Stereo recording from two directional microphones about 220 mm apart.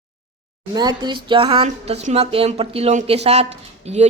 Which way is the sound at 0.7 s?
20° right (ahead or behind).